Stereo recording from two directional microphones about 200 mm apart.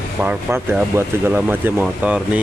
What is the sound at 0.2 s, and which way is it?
Speech, 10° right (ahead or behind).